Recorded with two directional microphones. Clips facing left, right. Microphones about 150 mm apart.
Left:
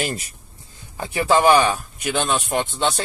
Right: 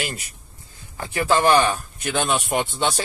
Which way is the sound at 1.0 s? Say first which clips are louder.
Left 2 dB; 20° left (ahead or behind).